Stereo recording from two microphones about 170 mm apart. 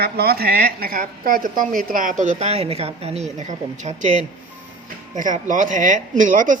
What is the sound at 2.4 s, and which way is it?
A woman's voice, 35° right (ahead or behind).